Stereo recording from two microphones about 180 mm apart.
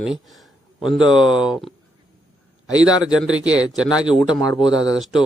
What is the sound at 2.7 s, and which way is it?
Speech, 20° left (ahead or behind).